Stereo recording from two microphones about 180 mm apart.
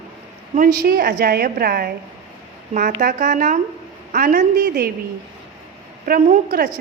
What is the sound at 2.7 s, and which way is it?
A woman's voice, 45° right (ahead or behind).